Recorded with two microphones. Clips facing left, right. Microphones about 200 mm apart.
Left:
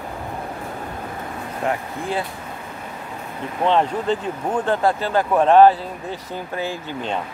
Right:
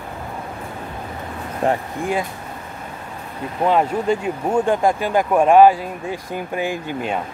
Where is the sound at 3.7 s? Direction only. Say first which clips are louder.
Right 1 dB; 10° right (ahead or behind).